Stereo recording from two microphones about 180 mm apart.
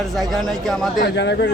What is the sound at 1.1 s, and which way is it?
Speech, 75° left (ahead or behind).